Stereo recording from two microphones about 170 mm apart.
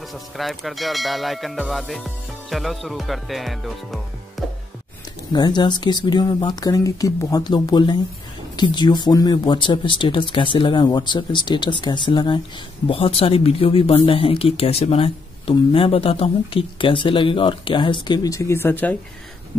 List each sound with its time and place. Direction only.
0.1 s music: centre (ahead or behind)
5.3 s speech: 25° left (ahead or behind); by 18.9 s 10° left (ahead or behind)